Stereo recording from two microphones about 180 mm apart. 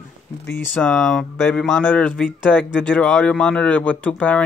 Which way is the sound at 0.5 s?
5° left (ahead or behind).